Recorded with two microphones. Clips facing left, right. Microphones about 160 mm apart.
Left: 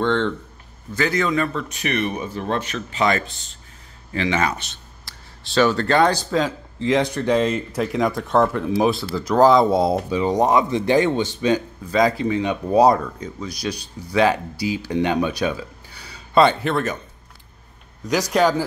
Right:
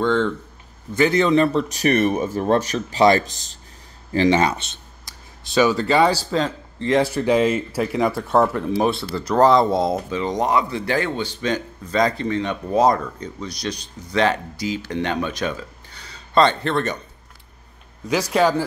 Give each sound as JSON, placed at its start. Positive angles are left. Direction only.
{"t": 0.0, "sound": "speech", "side_deg": -5}
{"t": 0.9, "sound": "speech", "side_deg": -25}
{"t": 18.3, "sound": "speech", "side_deg": -5}